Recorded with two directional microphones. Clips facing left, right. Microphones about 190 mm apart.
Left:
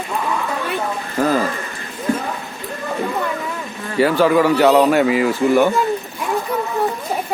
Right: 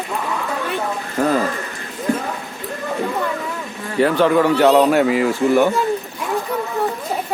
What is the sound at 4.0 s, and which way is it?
A man's voice, 5° left (ahead or behind).